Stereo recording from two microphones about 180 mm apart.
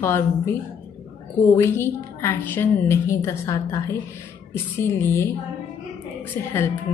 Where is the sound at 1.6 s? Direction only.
15° left (ahead or behind).